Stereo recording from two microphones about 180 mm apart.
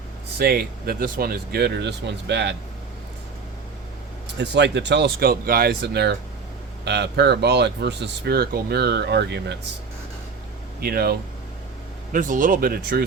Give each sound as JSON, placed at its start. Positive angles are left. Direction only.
{"t": 0.3, "sound": "speech", "side_deg": -60}
{"t": 4.4, "sound": "speech", "side_deg": -70}
{"t": 10.8, "sound": "speech", "side_deg": -60}
{"t": 12.1, "sound": "speech", "side_deg": -45}